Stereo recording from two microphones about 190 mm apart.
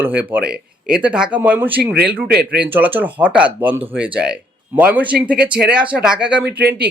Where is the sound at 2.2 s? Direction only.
55° right (ahead or behind).